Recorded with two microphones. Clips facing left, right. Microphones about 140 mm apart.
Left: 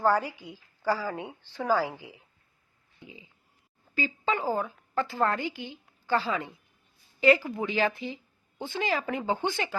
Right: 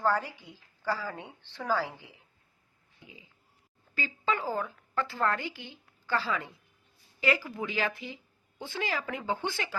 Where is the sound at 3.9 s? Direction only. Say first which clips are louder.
Left 3 dB; 15° left (ahead or behind).